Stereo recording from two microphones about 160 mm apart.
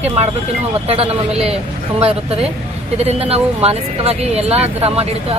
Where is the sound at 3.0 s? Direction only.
40° right (ahead or behind).